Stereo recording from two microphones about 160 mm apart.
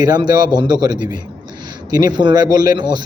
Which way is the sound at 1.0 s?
55° left (ahead or behind).